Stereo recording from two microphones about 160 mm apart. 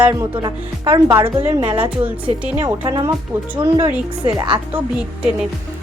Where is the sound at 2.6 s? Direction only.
25° right (ahead or behind).